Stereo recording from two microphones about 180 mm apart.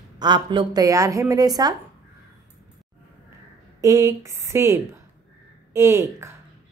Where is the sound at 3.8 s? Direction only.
20° right (ahead or behind).